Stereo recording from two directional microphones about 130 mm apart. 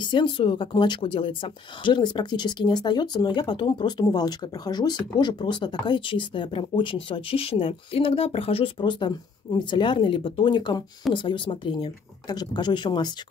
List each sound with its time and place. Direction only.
0.0 s speech: 40° left (ahead or behind)